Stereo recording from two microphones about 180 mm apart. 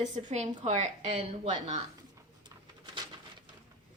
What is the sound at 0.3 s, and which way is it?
A woman's voice, 40° right (ahead or behind).